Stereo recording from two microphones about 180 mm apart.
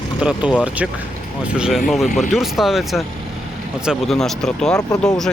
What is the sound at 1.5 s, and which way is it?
Speech, 5° right (ahead or behind).